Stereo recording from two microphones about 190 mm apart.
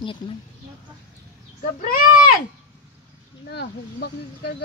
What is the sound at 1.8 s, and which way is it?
Speech, 45° left (ahead or behind).